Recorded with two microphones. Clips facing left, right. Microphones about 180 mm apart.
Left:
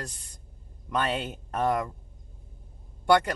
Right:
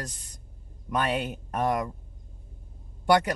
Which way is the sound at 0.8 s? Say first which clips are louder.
Right 1 dB; 10° right (ahead or behind).